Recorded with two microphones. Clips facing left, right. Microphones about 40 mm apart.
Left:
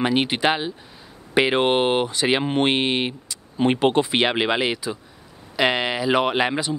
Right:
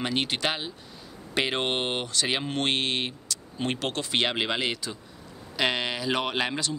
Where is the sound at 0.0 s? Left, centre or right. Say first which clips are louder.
Left 7 dB; centre.